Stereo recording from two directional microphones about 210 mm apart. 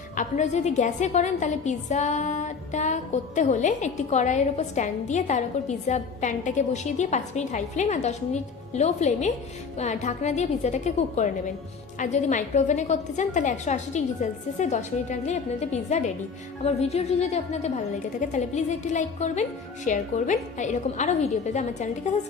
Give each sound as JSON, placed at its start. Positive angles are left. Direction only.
{"t": 0.2, "sound": "a woman's voice", "side_deg": 35}